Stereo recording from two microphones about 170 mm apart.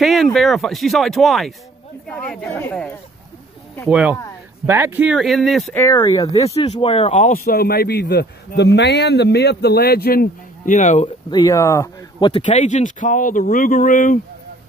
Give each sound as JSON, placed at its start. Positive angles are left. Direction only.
{"t": 0.0, "sound": "speech", "side_deg": 0}
{"t": 3.9, "sound": "speech", "side_deg": -10}
{"t": 5.9, "sound": "speech", "side_deg": 20}
{"t": 6.4, "sound": "speech", "side_deg": 35}
{"t": 7.2, "sound": "a man's voice", "side_deg": 55}
{"t": 11.2, "sound": "speech", "side_deg": 25}
{"t": 12.4, "sound": "speech", "side_deg": 45}